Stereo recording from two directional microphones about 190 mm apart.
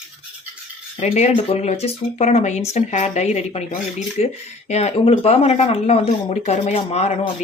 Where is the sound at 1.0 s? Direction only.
35° left (ahead or behind).